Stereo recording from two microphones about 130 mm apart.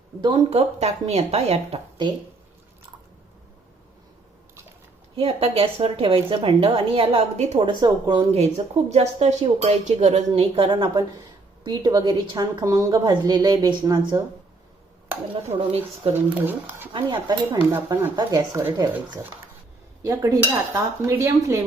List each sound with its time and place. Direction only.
0.2 s a woman's voice: 35° right (ahead or behind)
0.5 s a woman's voice: 55° right (ahead or behind)
5.1 s a woman's voice: 50° right (ahead or behind)
7.6 s a woman's voice: 35° right (ahead or behind)
8.3 s a woman's voice: 55° right (ahead or behind); by 14.2 s 30° right (ahead or behind)
16.1 s speech: 15° right (ahead or behind)
16.9 s a woman's voice: 35° right (ahead or behind)
17.7 s speech: 20° right (ahead or behind)
18.2 s dishes: 30° right (ahead or behind)
20.0 s dishes: 25° right (ahead or behind)